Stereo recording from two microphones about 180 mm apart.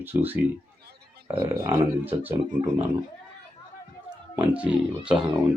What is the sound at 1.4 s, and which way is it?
Speech, 20° right (ahead or behind).